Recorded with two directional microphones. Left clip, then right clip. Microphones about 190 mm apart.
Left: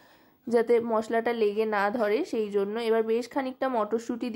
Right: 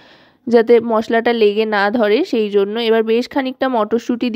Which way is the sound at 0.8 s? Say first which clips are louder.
Right 11 dB; 35° right (ahead or behind).